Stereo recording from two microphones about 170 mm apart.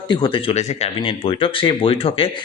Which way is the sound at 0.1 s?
30° left (ahead or behind).